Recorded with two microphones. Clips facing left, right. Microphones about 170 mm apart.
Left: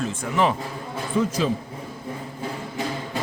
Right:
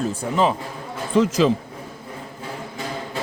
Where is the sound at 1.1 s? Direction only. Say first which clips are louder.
Right 6 dB; 90° right.